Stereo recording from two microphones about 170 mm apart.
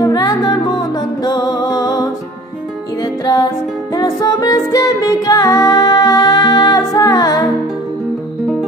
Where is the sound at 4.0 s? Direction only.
20° left (ahead or behind).